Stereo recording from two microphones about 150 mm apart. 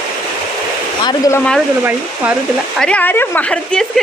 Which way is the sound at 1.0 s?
25° left (ahead or behind).